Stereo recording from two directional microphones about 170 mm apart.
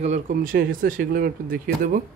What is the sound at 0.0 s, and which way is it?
Speech, 50° right (ahead or behind).